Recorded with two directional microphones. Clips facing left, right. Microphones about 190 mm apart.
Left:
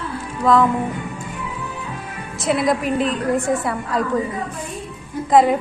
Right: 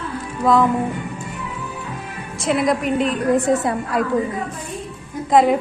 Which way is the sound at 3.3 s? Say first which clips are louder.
Right 3 dB; 20° right (ahead or behind).